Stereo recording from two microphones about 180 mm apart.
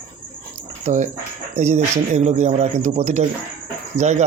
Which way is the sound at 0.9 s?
40° right (ahead or behind).